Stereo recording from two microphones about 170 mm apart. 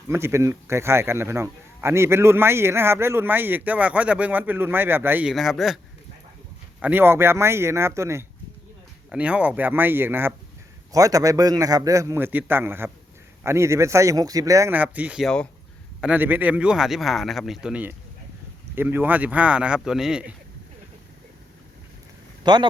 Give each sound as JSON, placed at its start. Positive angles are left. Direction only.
{"t": 0.1, "sound": "a man's voice", "side_deg": -15}
{"t": 5.3, "sound": "a man's voice", "side_deg": 0}
{"t": 22.4, "sound": "a man's voice", "side_deg": -25}